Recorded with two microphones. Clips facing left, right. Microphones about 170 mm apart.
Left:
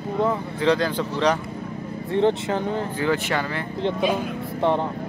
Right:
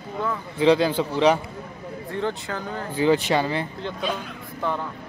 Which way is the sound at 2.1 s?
25° left (ahead or behind).